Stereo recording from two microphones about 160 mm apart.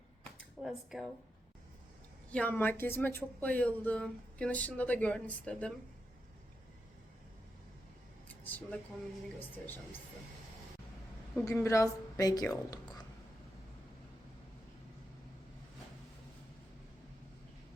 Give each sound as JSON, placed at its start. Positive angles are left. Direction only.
{"t": 0.3, "sound": "a sound", "side_deg": 0}
{"t": 2.3, "sound": "speech", "side_deg": 10}
{"t": 8.4, "sound": "speech", "side_deg": 10}
{"t": 11.3, "sound": "a woman's voice", "side_deg": 15}